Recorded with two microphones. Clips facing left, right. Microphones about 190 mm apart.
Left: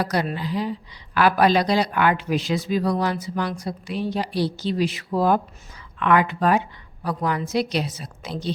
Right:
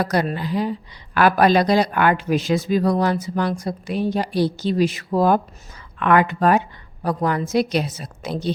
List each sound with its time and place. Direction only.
0.0 s speech: 50° right (ahead or behind)